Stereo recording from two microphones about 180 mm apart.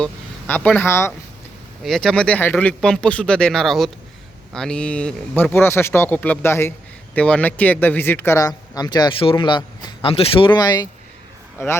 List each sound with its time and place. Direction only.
0.0 s speech: 10° left (ahead or behind)
1.8 s speech: centre (ahead or behind)